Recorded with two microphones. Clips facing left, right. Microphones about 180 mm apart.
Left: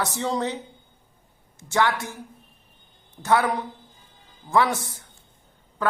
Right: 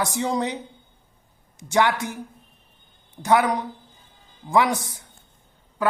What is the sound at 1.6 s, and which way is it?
Speech, 15° right (ahead or behind).